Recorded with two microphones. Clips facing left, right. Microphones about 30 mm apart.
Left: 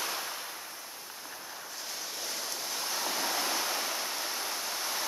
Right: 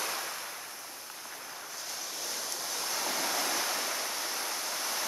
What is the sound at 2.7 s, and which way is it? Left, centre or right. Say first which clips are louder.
Waves: even; centre.